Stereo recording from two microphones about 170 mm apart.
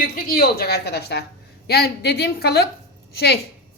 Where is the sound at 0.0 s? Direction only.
60° left (ahead or behind).